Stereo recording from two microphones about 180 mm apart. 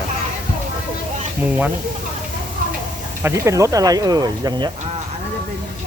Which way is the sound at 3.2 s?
15° right (ahead or behind).